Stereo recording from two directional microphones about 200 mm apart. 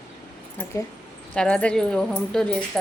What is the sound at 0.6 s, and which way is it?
A woman's voice, 15° left (ahead or behind).